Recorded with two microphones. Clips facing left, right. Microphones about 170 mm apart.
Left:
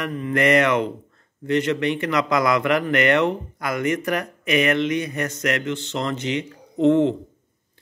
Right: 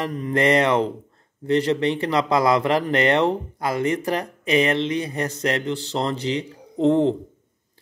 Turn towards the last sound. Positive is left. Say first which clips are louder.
# left 1 dB
turn(degrees=-35)  # may be behind; listen again after turning